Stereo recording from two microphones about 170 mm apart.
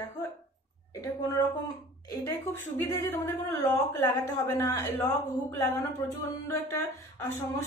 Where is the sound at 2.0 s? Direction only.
15° left (ahead or behind).